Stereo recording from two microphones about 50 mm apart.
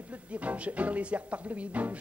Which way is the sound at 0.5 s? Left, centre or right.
Right.